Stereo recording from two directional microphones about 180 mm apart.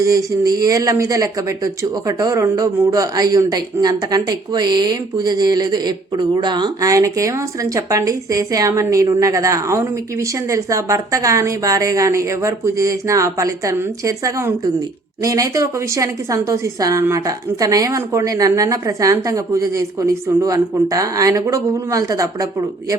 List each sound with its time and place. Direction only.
0.0 s speech: 20° right (ahead or behind)